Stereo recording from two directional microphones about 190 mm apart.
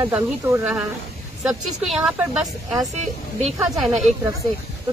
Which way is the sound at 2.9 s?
35° right (ahead or behind).